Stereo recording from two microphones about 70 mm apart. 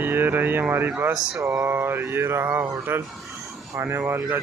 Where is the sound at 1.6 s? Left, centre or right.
Right.